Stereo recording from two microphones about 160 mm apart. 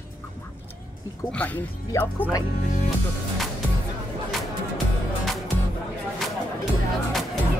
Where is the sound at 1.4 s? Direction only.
10° left (ahead or behind).